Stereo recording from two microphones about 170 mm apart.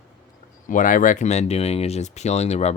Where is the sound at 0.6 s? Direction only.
50° left (ahead or behind).